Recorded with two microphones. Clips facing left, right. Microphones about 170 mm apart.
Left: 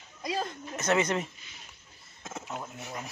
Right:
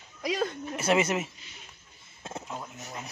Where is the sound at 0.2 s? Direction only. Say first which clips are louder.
Right 4 dB; 75° right (ahead or behind).